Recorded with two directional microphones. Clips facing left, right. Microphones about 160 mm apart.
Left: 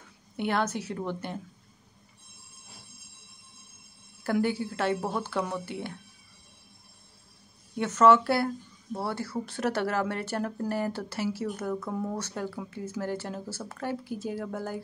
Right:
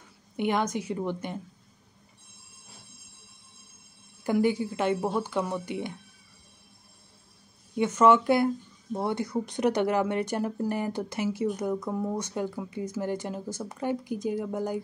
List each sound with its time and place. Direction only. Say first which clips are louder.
0.4 s speech: right 2 dB; 15° right (ahead or behind)
4.2 s speech: right 3 dB; 15° right (ahead or behind)
7.7 s speech: even; 10° right (ahead or behind)